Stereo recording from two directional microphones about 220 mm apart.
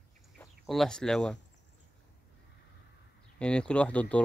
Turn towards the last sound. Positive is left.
turn(degrees=5)  # may be behind; listen again after turning